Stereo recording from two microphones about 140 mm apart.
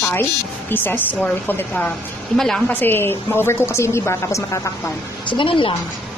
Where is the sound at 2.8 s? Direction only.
15° left (ahead or behind).